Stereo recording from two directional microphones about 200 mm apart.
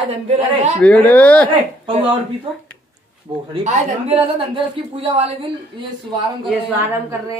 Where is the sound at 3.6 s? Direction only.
35° right (ahead or behind).